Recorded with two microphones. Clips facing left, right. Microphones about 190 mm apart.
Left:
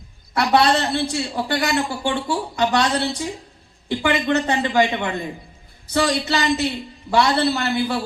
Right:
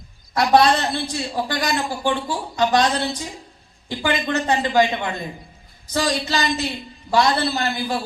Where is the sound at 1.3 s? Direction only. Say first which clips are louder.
Even; 35° right (ahead or behind).